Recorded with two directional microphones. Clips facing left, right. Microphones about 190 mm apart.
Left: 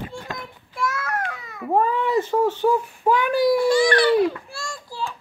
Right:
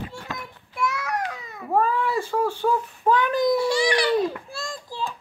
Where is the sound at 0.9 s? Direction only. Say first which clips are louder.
Even; 15° right (ahead or behind).